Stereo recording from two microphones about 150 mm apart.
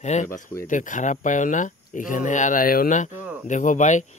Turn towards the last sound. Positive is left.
turn(degrees=55)  # may be behind; listen again after turning